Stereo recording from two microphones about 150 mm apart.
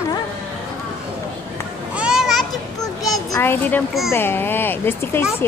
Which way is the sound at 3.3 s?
15° left (ahead or behind).